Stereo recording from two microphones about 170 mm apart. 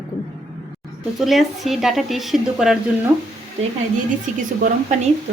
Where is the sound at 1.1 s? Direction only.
Centre (ahead or behind).